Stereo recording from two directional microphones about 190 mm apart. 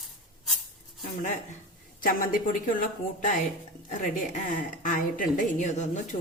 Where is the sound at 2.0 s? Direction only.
45° left (ahead or behind).